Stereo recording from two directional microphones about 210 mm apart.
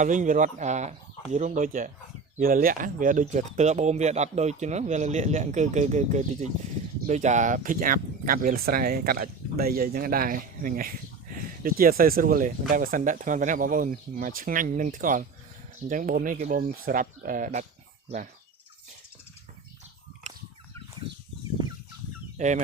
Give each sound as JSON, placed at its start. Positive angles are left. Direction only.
{"t": 0.0, "sound": "speech", "side_deg": -35}
{"t": 22.4, "sound": "chicken", "side_deg": -35}